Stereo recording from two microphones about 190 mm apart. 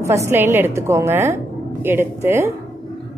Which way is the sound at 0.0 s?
15° right (ahead or behind).